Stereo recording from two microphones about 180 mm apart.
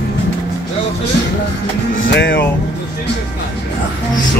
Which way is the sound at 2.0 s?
80° left.